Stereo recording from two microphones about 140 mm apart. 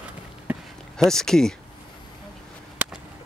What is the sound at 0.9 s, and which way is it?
Speech, 5° left (ahead or behind).